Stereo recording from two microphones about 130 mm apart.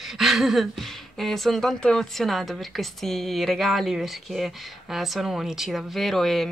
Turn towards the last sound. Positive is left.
turn(degrees=0)  # may be behind; listen again after turning